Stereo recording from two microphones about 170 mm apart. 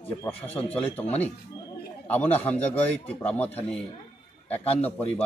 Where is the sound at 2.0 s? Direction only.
10° left (ahead or behind).